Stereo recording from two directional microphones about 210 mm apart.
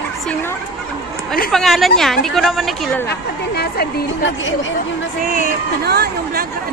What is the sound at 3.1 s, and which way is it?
A woman's voice, 50° left (ahead or behind).